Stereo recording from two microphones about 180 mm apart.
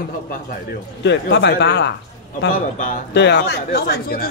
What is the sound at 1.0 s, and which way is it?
Speech, 75° left (ahead or behind).